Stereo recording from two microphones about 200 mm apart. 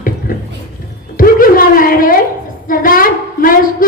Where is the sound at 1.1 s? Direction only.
45° left (ahead or behind).